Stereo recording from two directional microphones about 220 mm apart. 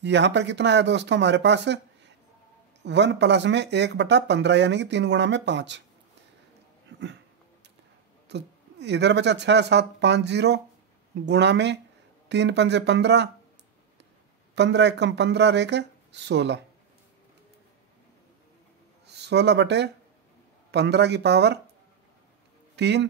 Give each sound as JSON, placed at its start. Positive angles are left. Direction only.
{"t": 0.0, "sound": "speech", "side_deg": -55}
{"t": 6.9, "sound": "dog", "side_deg": -55}
{"t": 8.3, "sound": "speech", "side_deg": -50}
{"t": 14.5, "sound": "speech", "side_deg": -50}
{"t": 19.0, "sound": "speech", "side_deg": -50}
{"t": 22.8, "sound": "speech", "side_deg": -50}